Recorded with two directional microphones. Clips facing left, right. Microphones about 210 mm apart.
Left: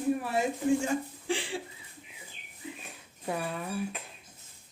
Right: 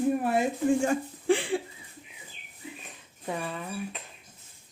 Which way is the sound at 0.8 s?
55° right (ahead or behind).